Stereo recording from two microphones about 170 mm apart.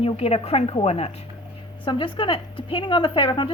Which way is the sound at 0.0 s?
35° left (ahead or behind).